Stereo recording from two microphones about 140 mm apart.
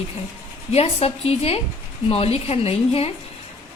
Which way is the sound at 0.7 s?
45° left (ahead or behind).